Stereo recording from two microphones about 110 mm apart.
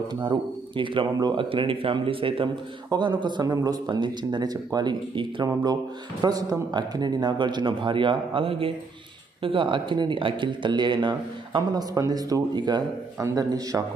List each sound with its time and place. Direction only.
0.1 s speech: 45° right (ahead or behind)
2.9 s speech: 45° right (ahead or behind)
11.9 s speech: 30° right (ahead or behind)